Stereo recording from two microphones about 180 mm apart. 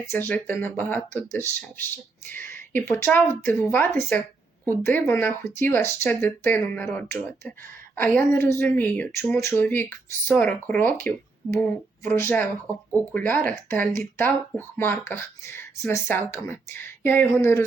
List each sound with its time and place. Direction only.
0.0 s speech: 10° left (ahead or behind)